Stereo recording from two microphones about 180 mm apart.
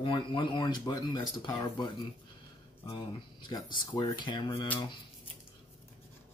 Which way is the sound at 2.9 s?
25° left (ahead or behind).